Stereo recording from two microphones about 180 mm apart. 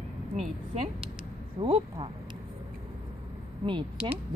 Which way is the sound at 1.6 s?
30° right (ahead or behind).